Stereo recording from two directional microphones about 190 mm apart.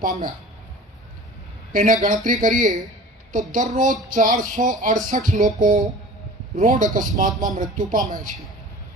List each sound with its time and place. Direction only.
0.0 s speech: 45° right (ahead or behind)
1.7 s speech: 40° right (ahead or behind)